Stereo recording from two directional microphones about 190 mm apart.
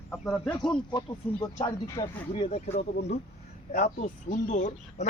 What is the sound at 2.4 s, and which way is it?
Speech, 35° left (ahead or behind).